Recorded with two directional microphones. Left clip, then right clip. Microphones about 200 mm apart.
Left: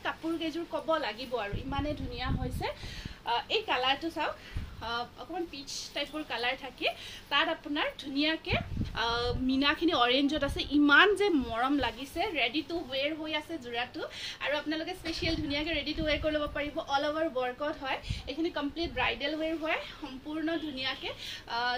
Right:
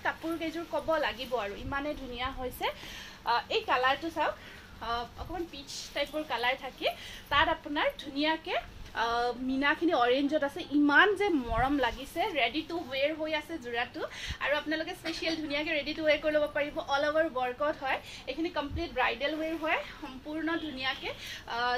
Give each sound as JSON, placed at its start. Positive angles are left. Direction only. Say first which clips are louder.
{"t": 0.0, "sound": "a woman's voice", "louder": "right 1 dB", "side_deg": 15}
{"t": 5.9, "sound": "a woman's voice", "louder": "right 3 dB", "side_deg": 15}